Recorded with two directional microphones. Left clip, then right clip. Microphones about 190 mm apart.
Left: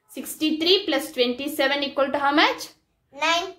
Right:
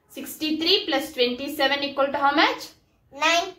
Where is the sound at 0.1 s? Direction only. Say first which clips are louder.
Left 2 dB; 50° left (ahead or behind).